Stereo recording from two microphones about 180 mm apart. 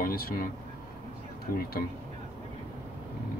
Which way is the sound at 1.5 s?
55° left (ahead or behind).